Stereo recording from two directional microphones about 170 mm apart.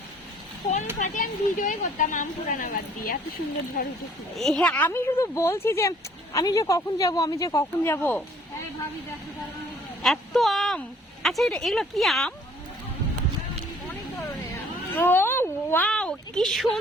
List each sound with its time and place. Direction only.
0.9 s speech: 50° left (ahead or behind)
4.4 s speech: 5° left (ahead or behind)
10.0 s a woman's voice: centre (ahead or behind)
14.9 s speech: 10° left (ahead or behind)